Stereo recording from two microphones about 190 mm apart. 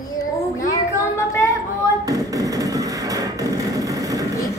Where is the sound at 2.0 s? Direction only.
20° right (ahead or behind).